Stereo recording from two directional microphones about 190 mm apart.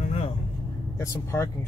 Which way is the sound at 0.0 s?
40° left (ahead or behind).